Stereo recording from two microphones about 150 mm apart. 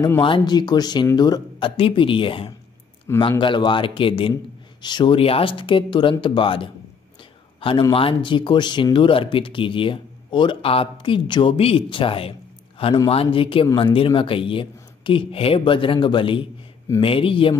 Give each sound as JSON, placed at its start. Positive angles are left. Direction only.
{"t": 0.2, "sound": "speech", "side_deg": 30}
{"t": 7.9, "sound": "speech", "side_deg": 35}